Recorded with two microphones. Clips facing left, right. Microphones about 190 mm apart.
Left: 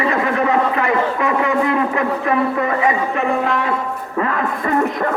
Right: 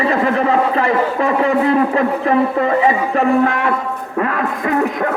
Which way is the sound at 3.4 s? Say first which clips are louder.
Right 3 dB; 55° right (ahead or behind).